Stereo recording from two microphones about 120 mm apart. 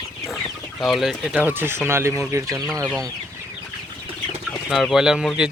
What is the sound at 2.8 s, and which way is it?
Speech, 5° left (ahead or behind).